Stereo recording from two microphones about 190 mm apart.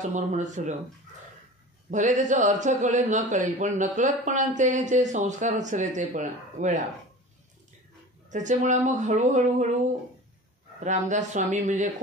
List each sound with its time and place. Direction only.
0.1 s a man's voice: 40° right (ahead or behind)
1.9 s a man's voice: 40° right (ahead or behind)
8.3 s a man's voice: 40° right (ahead or behind)
10.8 s a man's voice: 40° right (ahead or behind)